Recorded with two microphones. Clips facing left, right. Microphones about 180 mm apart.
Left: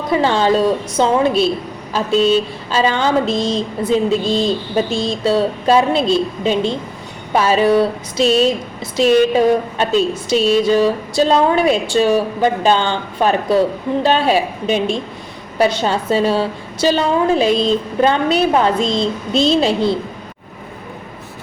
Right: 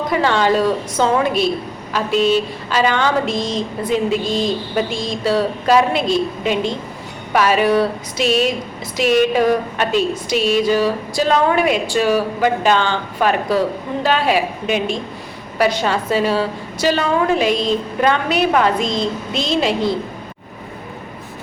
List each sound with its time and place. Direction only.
0.1 s a woman's voice: 30° left (ahead or behind)
2.6 s a woman's voice: 30° left (ahead or behind)